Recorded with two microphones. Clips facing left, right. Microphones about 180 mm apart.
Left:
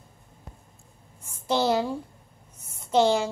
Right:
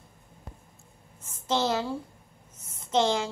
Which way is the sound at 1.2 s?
10° left (ahead or behind).